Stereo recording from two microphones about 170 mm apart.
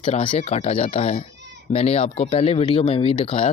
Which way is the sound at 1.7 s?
35° left (ahead or behind).